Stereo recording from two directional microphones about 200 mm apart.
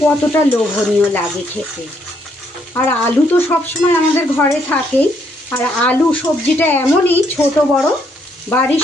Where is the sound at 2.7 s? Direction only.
10° left (ahead or behind).